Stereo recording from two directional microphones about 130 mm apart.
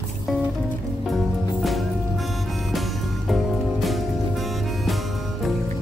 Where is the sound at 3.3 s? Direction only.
Centre (ahead or behind).